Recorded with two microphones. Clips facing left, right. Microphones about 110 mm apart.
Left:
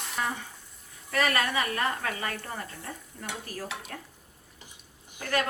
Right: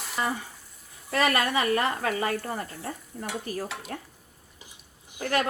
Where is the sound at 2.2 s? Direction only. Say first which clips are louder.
Right 7 dB; 35° right (ahead or behind).